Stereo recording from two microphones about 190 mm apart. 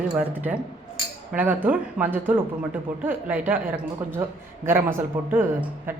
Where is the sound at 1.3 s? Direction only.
10° right (ahead or behind).